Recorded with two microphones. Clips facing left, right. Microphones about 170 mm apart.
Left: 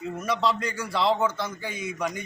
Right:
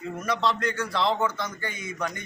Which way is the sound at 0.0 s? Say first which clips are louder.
Left 1 dB; 5° left (ahead or behind).